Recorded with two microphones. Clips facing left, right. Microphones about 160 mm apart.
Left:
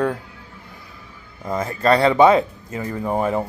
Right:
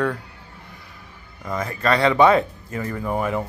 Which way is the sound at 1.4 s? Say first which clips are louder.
Left 4 dB; 25° left (ahead or behind).